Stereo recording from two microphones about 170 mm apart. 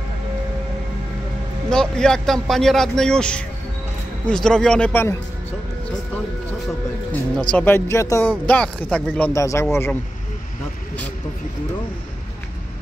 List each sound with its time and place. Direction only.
1.7 s speech: 5° left (ahead or behind)
7.5 s speech: 15° left (ahead or behind)
9.3 s speech: 20° left (ahead or behind)